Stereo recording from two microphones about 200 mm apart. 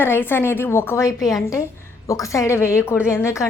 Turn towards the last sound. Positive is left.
turn(degrees=15)  # may be behind; listen again after turning